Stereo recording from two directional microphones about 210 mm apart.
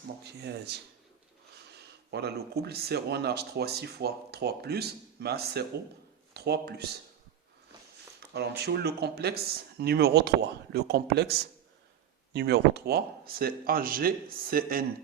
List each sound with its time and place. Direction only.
0.3 s speech: 50° right (ahead or behind)
2.0 s speech: 50° right (ahead or behind)
8.3 s speech: 50° right (ahead or behind)